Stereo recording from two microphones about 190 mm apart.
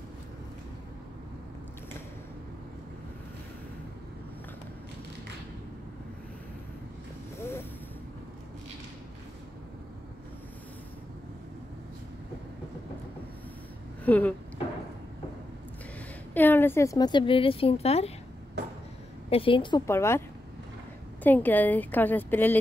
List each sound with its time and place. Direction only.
14.0 s a sound: 10° left (ahead or behind)
16.3 s a woman's voice: 10° left (ahead or behind); by 18.1 s 35° left (ahead or behind)
19.3 s a woman's voice: 25° left (ahead or behind)
19.9 s a woman's voice: 15° left (ahead or behind)